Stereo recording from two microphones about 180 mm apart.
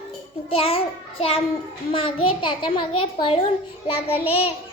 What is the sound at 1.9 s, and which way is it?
A child's voice, 30° left (ahead or behind).